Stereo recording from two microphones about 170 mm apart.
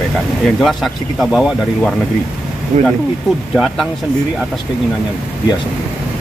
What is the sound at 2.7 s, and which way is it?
Speech, 40° right (ahead or behind).